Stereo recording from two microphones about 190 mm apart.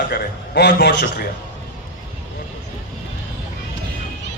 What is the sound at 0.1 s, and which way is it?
A man's voice, 60° left (ahead or behind).